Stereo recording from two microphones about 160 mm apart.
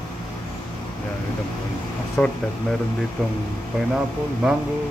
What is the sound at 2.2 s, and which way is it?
Speech, 5° left (ahead or behind).